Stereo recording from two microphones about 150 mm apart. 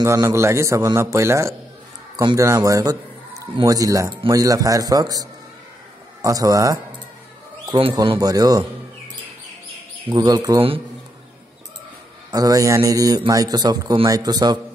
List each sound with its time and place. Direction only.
0.0 s a man's voice: 20° right (ahead or behind)
10.1 s a man's voice: 25° right (ahead or behind)
12.3 s a man's voice: 25° right (ahead or behind)